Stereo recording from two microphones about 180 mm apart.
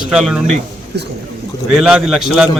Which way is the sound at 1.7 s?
5° right (ahead or behind).